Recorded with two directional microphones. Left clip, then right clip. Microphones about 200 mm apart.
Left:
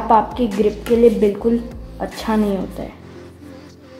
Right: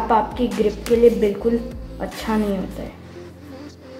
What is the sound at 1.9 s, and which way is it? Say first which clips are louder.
Speech: left 3 dB; 35° left (ahead or behind).